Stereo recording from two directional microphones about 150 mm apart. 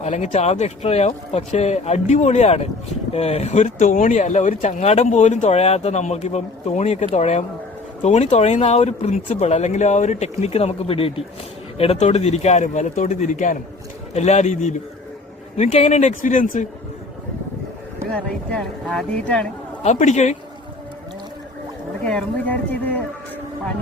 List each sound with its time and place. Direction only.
0.0 s speech: 50° left (ahead or behind)
18.1 s speech: 5° left (ahead or behind)
19.8 s speech: 50° left (ahead or behind)
22.0 s speech: 10° left (ahead or behind)